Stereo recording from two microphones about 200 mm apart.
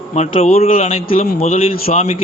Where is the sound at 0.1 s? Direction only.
30° left (ahead or behind).